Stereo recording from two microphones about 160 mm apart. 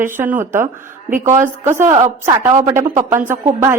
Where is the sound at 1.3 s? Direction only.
15° right (ahead or behind).